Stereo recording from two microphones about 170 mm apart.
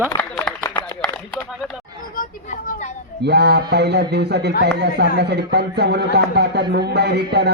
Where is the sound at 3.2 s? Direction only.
80° right.